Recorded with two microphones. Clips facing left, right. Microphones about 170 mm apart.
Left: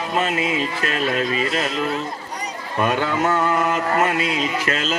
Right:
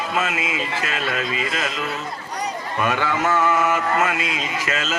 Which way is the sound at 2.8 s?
35° left (ahead or behind).